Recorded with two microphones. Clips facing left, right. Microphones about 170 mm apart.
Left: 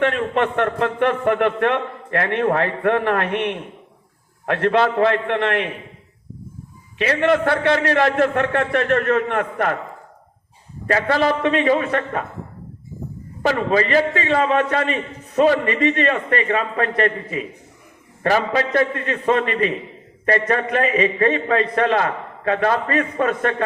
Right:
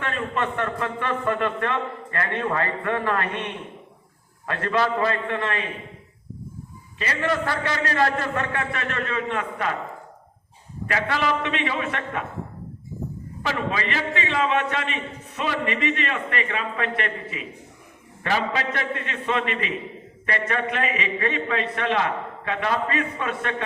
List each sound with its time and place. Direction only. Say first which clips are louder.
0.0 s a man's voice: left 8 dB; 65° left (ahead or behind)
7.0 s a man's voice: left 8 dB; 65° left (ahead or behind)
10.8 s a man's voice: left 6 dB; 40° left (ahead or behind)
13.4 s a man's voice: left 8 dB; 40° left (ahead or behind)